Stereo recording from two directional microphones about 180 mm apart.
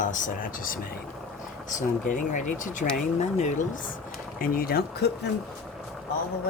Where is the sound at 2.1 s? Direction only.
45° left (ahead or behind); by 5.3 s 65° left (ahead or behind).